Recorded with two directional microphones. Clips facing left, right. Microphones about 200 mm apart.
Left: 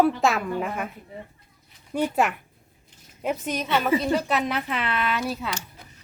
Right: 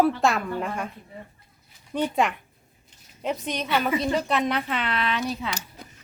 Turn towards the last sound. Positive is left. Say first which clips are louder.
# even
turn(degrees=5)  # may be behind; listen again after turning